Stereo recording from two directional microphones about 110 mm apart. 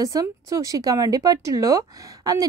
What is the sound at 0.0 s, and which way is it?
Speech, 30° right (ahead or behind).